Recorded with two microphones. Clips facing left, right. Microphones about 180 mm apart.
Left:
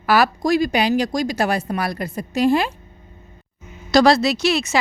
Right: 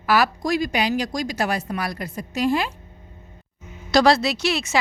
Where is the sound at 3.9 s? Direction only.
40° left (ahead or behind).